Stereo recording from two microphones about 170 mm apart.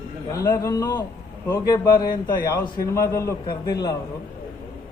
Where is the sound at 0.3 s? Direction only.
20° left (ahead or behind).